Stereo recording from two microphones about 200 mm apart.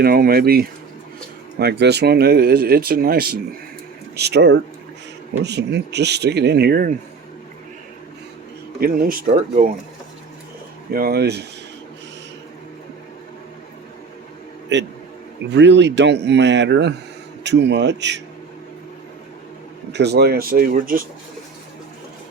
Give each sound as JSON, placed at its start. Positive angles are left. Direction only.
{"t": 0.0, "sound": "speech", "side_deg": -50}
{"t": 8.8, "sound": "speech", "side_deg": -45}
{"t": 10.9, "sound": "speech", "side_deg": -50}
{"t": 14.7, "sound": "speech", "side_deg": -60}
{"t": 19.9, "sound": "speech", "side_deg": -55}